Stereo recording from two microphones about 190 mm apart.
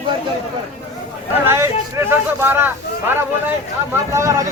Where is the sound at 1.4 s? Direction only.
15° right (ahead or behind).